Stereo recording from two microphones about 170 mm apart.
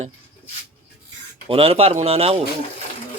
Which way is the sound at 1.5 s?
35° right (ahead or behind).